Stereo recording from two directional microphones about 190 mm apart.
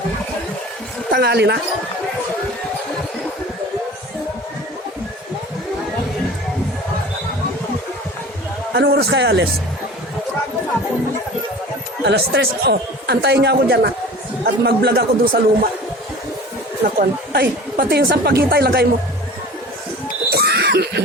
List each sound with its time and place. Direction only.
1.1 s a woman's voice: 60° right (ahead or behind)
8.7 s a woman's voice: 60° right (ahead or behind)
12.0 s a woman's voice: 60° right (ahead or behind)
16.8 s a woman's voice: 55° right (ahead or behind)
20.3 s a sound: 60° right (ahead or behind)